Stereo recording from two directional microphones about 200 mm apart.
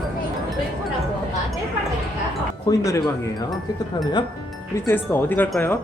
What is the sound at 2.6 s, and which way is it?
Speech, 15° left (ahead or behind).